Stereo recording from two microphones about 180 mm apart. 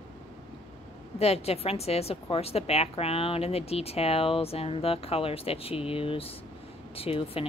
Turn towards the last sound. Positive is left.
turn(degrees=30)  # may be behind; listen again after turning